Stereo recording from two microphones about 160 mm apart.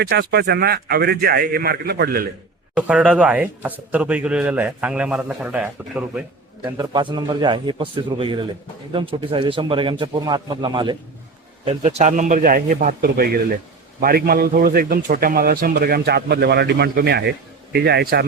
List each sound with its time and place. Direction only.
0.0 s a man's voice: 85° right; by 2.2 s 70° right (ahead or behind)
2.7 s a man's voice: 5° right (ahead or behind)
6.7 s a man's voice: 25° right (ahead or behind)
11.6 s a man's voice: 40° right (ahead or behind); by 18.3 s 80° right